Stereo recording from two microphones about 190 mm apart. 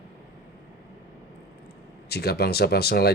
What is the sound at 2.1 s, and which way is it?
Speech, 55° left (ahead or behind).